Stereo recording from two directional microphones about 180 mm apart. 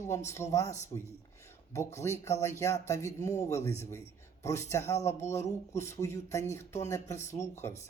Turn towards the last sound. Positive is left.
turn(degrees=15)  # may be behind; listen again after turning